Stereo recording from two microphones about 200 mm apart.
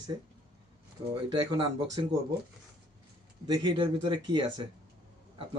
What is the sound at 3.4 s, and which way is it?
Speech, 25° right (ahead or behind).